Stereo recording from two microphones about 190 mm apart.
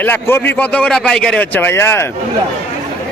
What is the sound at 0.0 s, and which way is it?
Speech, 10° left (ahead or behind).